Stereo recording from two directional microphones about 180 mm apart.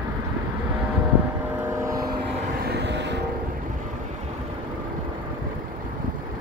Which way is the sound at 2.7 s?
70° right (ahead or behind).